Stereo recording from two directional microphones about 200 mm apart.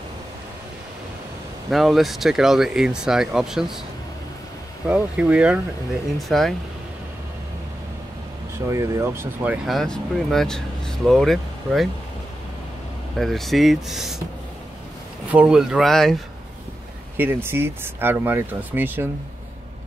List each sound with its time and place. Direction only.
1.7 s speech: centre (ahead or behind)
4.8 s speech: 5° right (ahead or behind)
8.6 s speech: 15° right (ahead or behind)
13.2 s speech: centre (ahead or behind)
15.3 s speech: 5° right (ahead or behind)
17.2 s speech: 10° right (ahead or behind)